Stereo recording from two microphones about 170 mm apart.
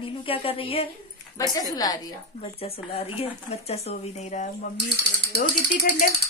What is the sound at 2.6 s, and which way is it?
Speech, 35° left (ahead or behind).